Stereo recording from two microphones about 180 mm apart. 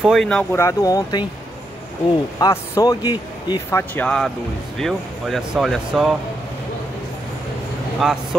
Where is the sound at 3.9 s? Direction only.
5° left (ahead or behind).